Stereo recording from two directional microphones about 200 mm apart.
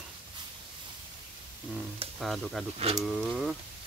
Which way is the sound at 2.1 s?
Centre (ahead or behind).